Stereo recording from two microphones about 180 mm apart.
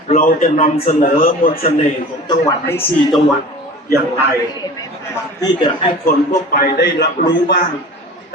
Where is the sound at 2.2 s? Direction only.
15° left (ahead or behind).